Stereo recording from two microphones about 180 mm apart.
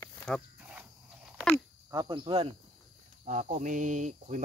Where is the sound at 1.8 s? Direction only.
25° right (ahead or behind).